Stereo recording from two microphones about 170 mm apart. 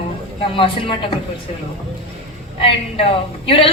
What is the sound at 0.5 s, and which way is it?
Speech, 30° left (ahead or behind).